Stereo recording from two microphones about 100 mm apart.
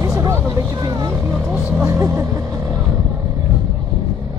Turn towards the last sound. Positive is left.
turn(degrees=-30)  # may be behind; listen again after turning